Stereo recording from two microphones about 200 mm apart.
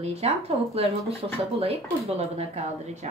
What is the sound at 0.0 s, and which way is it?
Speech, 30° right (ahead or behind).